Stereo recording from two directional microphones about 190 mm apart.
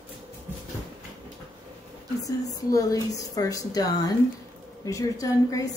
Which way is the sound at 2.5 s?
20° left (ahead or behind).